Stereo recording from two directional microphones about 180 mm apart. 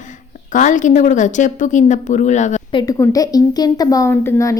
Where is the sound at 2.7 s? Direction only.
25° left (ahead or behind).